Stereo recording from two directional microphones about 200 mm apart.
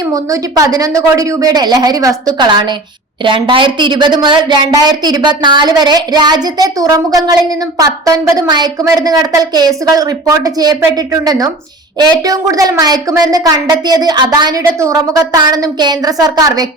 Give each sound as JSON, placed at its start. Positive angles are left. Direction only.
{"t": 0.0, "sound": "a woman's voice", "side_deg": -15}